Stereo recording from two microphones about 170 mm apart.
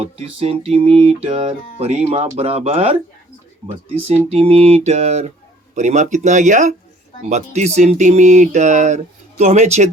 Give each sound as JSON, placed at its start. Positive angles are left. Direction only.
{"t": 0.0, "sound": "music", "side_deg": -35}
{"t": 4.0, "sound": "music", "side_deg": -35}
{"t": 5.7, "sound": "speech", "side_deg": -45}
{"t": 7.2, "sound": "music", "side_deg": -40}